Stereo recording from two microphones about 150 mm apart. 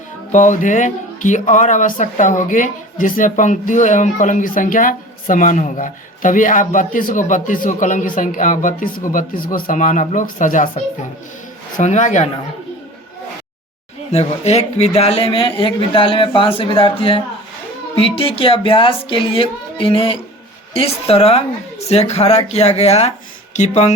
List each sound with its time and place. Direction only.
0.3 s a woman's voice: 55° left (ahead or behind)
14.1 s a woman's voice: 45° left (ahead or behind)